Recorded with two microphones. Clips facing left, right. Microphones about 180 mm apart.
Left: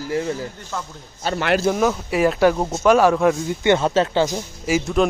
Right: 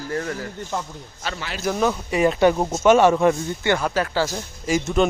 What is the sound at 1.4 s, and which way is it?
Speech, 65° left (ahead or behind).